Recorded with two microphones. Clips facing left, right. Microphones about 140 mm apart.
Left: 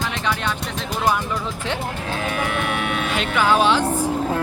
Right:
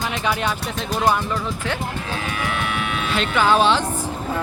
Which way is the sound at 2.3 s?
45° left (ahead or behind).